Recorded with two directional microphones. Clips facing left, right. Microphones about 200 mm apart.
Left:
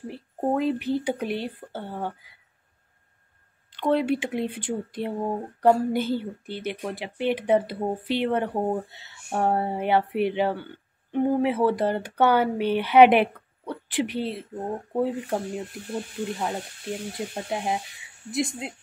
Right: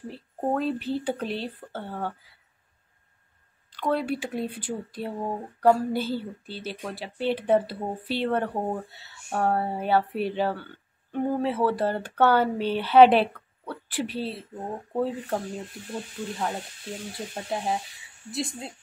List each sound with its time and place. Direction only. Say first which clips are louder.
0.6 s a woman's voice: left 3 dB; 15° left (ahead or behind)
3.7 s a woman's voice: left 4 dB; 20° left (ahead or behind)